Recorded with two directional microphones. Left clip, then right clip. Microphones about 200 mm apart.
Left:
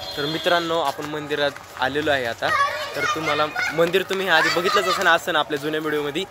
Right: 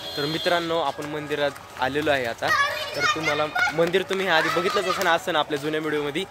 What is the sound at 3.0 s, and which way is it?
Speech, 25° right (ahead or behind).